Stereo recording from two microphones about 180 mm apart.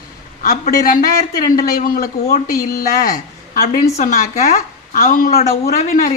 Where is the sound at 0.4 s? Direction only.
50° left (ahead or behind).